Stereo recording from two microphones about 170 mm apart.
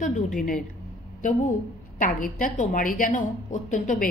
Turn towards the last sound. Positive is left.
turn(degrees=50)  # may be behind; listen again after turning